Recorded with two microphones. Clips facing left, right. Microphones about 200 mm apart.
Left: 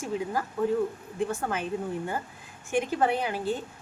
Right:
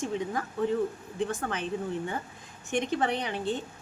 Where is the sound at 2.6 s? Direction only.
5° left (ahead or behind).